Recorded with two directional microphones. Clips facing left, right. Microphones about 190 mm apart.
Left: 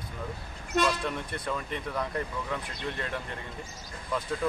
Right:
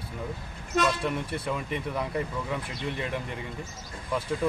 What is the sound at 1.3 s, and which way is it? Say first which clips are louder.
Speech: right 2 dB; 10° right (ahead or behind).